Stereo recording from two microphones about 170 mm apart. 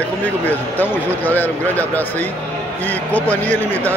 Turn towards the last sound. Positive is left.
turn(degrees=10)  # may be behind; listen again after turning